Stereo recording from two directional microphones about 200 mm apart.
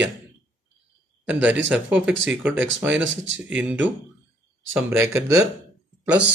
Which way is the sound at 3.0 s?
70° right (ahead or behind).